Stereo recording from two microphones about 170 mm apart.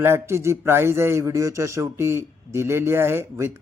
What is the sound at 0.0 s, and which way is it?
Speech, 15° right (ahead or behind).